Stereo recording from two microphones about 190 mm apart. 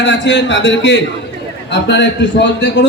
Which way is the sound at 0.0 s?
70° left (ahead or behind).